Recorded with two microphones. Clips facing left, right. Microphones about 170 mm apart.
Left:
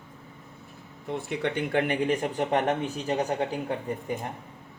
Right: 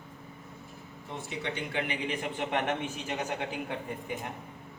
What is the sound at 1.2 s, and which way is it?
Speech, 55° left (ahead or behind).